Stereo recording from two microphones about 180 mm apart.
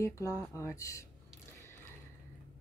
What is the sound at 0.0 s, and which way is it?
A woman's voice, 20° left (ahead or behind).